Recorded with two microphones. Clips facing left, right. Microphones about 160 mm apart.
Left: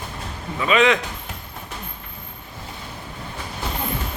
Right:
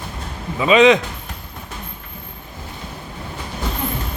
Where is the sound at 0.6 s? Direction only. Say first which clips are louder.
Right 6 dB; 20° right (ahead or behind).